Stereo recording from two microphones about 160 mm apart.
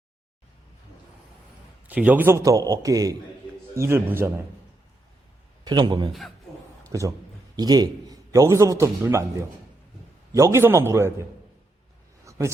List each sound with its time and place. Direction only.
1.9 s a man's voice: 10° right (ahead or behind)
5.6 s a man's voice: 25° right (ahead or behind)
7.5 s a man's voice: 25° right (ahead or behind)
10.3 s a man's voice: 15° right (ahead or behind)
12.2 s a sound: 20° right (ahead or behind)